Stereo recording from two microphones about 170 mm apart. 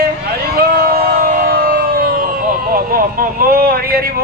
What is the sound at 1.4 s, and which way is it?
Siren, 60° right (ahead or behind).